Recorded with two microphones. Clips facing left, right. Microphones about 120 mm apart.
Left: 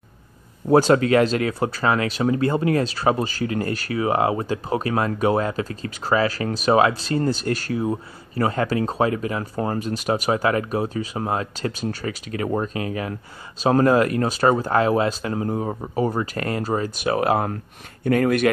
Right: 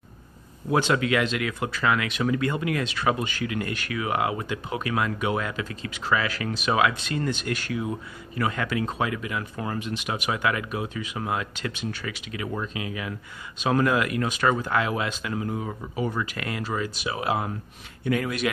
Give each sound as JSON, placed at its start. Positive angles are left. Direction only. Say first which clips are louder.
{"t": 0.7, "sound": "speech", "louder": "left 7 dB", "side_deg": 40}